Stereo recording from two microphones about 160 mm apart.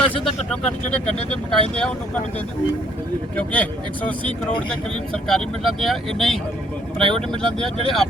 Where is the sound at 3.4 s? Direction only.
10° left (ahead or behind).